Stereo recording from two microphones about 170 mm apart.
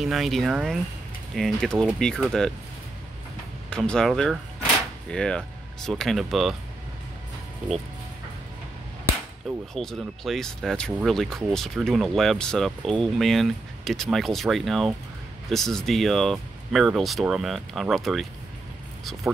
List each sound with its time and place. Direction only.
0.0 s speech: centre (ahead or behind)
3.7 s speech: 5° left (ahead or behind)
9.5 s speech: centre (ahead or behind)